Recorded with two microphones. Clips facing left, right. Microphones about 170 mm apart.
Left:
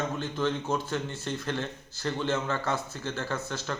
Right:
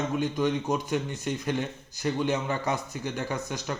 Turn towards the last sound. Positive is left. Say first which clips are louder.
# right 1 dB
turn(degrees=-15)  # may be behind; listen again after turning